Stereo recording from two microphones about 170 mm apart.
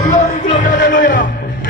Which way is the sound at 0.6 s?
50° left (ahead or behind).